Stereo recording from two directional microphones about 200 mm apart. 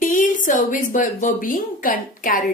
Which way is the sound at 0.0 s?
40° left (ahead or behind).